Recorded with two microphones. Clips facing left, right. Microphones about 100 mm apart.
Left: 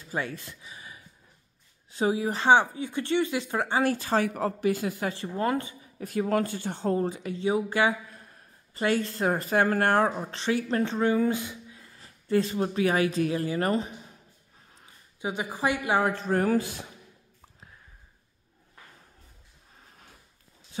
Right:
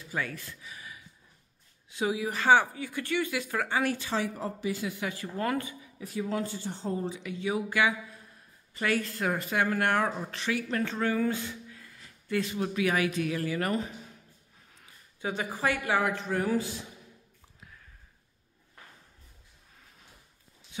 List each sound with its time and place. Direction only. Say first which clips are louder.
0.1 s speech: left 2 dB; 25° left (ahead or behind); by 4.3 s 45° left (ahead or behind)
4.3 s speech: left 6 dB; 80° left
4.6 s speech: left 5 dB; 50° left (ahead or behind)
5.1 s speech: left 3 dB; 25° left (ahead or behind)
5.9 s speech: left 6 dB; 55° left (ahead or behind)
7.2 s speech: left 4 dB; 35° left (ahead or behind); by 11.9 s 20° left (ahead or behind)
11.9 s speech: left 6 dB; 35° left (ahead or behind)
15.1 s a woman's voice: left 1 dB; 15° left (ahead or behind)
16.0 s speech: left 4 dB; 35° left (ahead or behind); by 16.8 s 55° left (ahead or behind)